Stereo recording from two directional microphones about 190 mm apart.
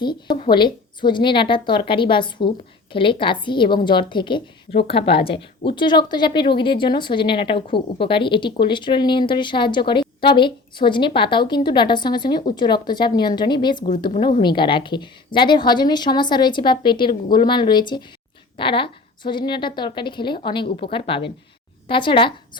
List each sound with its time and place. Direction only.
0.0 s speech: 25° left (ahead or behind)